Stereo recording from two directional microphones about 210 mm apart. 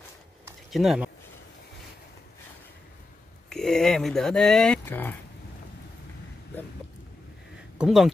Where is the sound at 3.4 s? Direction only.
Centre (ahead or behind).